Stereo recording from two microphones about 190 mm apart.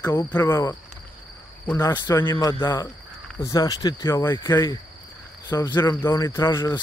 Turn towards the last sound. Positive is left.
turn(degrees=20)  # may be behind; listen again after turning